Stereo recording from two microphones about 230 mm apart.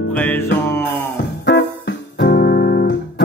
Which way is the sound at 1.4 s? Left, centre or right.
Left.